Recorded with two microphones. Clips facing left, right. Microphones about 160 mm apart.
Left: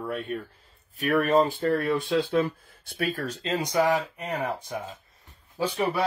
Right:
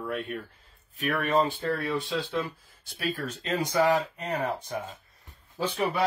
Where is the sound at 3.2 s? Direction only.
35° left (ahead or behind).